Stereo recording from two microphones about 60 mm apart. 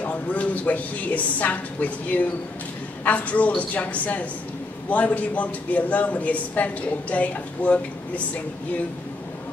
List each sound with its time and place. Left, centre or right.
0.0 s a man's voice: left